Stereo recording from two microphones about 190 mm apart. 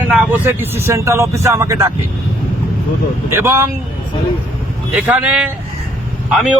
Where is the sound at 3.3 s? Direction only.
15° right (ahead or behind).